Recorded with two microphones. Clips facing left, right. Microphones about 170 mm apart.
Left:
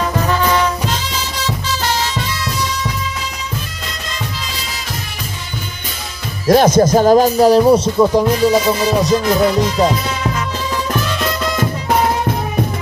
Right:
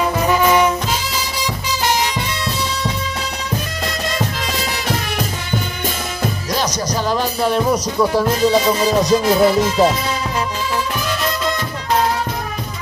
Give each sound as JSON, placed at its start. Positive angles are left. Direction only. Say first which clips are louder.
{"t": 0.2, "sound": "music", "louder": "right 3 dB", "side_deg": -10}
{"t": 6.4, "sound": "speech", "louder": "left 16 dB", "side_deg": 50}
{"t": 8.0, "sound": "music", "louder": "left 3 dB", "side_deg": 15}
{"t": 9.0, "sound": "music", "louder": "right 1 dB", "side_deg": 0}